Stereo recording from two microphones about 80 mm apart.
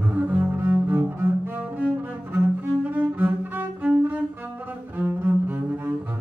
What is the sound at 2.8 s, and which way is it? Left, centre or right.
Cello, right.